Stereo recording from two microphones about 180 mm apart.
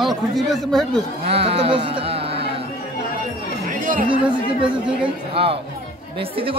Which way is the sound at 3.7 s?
50° right (ahead or behind).